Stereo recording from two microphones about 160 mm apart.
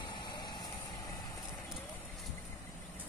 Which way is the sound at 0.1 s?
30° left (ahead or behind).